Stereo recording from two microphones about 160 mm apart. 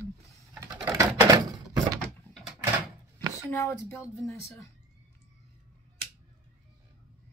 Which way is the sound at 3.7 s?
15° left (ahead or behind).